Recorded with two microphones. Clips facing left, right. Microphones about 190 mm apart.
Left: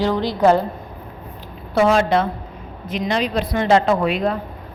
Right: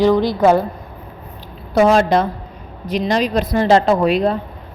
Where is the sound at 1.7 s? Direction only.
40° right (ahead or behind).